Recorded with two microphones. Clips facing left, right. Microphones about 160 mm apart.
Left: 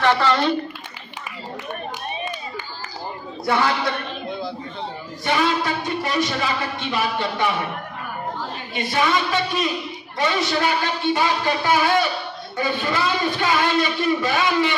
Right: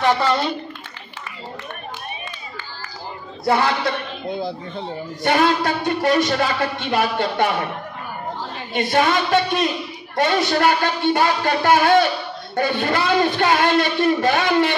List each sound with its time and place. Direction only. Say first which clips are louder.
0.0 s a woman's voice: even; 10° right (ahead or behind)
5.2 s a woman's voice: right 3 dB; 55° right (ahead or behind)
8.7 s a woman's voice: right 3 dB; 50° right (ahead or behind)